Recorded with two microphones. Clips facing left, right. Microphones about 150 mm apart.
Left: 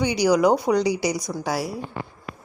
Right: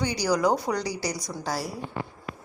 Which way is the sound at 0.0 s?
15° left (ahead or behind).